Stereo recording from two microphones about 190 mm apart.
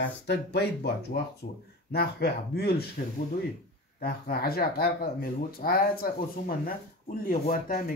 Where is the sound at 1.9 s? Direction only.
55° left (ahead or behind).